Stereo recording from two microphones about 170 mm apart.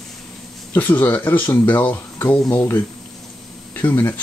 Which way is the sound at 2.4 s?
20° left (ahead or behind).